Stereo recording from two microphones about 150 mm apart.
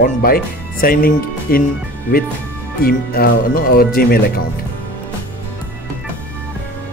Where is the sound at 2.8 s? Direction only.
90° left.